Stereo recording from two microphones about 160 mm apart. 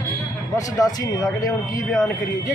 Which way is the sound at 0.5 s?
25° left (ahead or behind).